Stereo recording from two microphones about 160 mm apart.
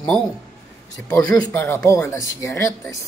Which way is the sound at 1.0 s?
5° left (ahead or behind).